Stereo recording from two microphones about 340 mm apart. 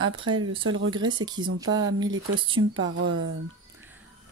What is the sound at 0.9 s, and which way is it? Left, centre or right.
Speech, centre.